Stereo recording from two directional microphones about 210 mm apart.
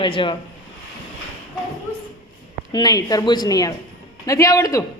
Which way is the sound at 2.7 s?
20° left (ahead or behind).